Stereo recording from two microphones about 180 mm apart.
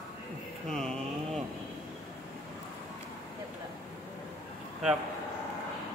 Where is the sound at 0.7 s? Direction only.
5° left (ahead or behind).